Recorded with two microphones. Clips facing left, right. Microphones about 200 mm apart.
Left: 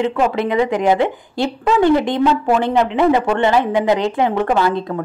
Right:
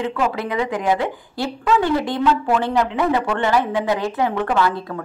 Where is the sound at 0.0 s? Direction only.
25° left (ahead or behind).